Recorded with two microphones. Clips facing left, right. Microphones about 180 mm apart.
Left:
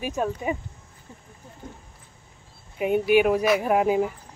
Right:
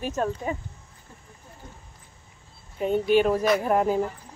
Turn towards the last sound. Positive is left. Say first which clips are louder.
# left 1 dB
turn(degrees=10)  # may be behind; listen again after turning